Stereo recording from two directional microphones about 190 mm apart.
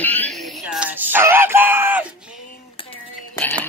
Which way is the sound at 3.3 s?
10° left (ahead or behind).